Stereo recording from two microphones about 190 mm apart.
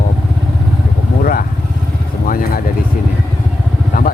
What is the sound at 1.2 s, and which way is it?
Vehicle, 50° left (ahead or behind).